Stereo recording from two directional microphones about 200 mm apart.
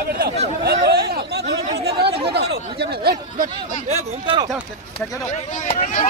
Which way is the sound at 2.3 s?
55° right (ahead or behind).